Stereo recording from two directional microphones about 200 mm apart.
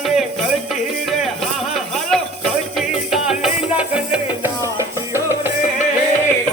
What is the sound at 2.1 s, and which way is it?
Music, centre (ahead or behind).